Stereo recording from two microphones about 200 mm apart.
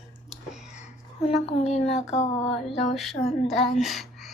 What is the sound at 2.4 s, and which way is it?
Speech, centre (ahead or behind).